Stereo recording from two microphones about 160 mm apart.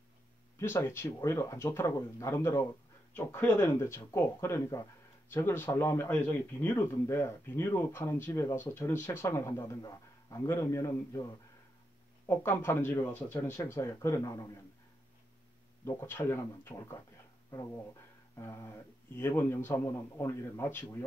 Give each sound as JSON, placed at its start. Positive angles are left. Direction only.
{"t": 0.8, "sound": "speech", "side_deg": 15}
{"t": 12.3, "sound": "speech", "side_deg": 15}
{"t": 15.8, "sound": "speech", "side_deg": 15}
{"t": 18.4, "sound": "speech", "side_deg": 15}